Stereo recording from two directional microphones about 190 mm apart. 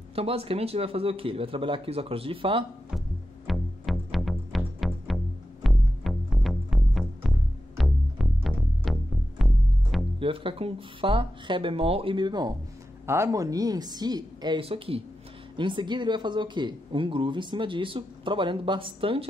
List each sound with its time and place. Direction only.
0.1 s speech: 30° right (ahead or behind)
3.4 s music: centre (ahead or behind)
10.1 s speech: 30° right (ahead or behind)